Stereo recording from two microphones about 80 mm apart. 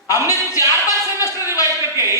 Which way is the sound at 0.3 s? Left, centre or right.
Left.